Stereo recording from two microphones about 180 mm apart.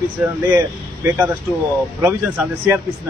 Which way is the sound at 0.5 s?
15° right (ahead or behind).